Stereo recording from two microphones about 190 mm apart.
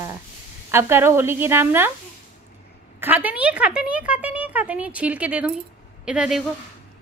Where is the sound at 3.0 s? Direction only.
10° right (ahead or behind).